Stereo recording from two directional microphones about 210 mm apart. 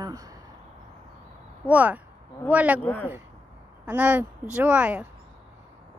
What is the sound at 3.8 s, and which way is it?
Speech, 5° right (ahead or behind).